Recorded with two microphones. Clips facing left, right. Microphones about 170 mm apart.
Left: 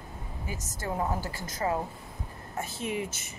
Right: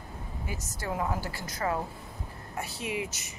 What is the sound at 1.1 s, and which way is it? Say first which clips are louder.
A woman's voice: left 1 dB; 45° left (ahead or behind).